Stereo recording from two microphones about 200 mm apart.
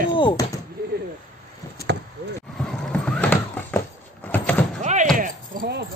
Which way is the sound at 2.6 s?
5° left (ahead or behind).